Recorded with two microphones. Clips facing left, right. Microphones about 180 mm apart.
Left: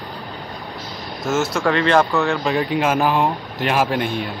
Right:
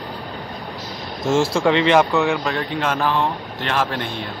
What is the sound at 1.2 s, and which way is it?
Speech, 25° right (ahead or behind).